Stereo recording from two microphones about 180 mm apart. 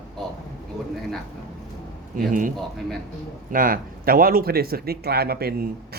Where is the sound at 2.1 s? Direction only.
50° right (ahead or behind).